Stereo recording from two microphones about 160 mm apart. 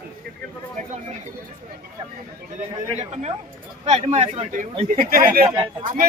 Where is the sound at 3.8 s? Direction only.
45° right (ahead or behind).